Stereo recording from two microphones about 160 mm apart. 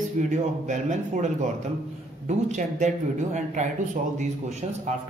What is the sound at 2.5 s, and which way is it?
Speech, 45° right (ahead or behind).